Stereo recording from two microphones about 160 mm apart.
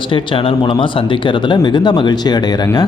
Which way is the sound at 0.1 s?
35° left (ahead or behind).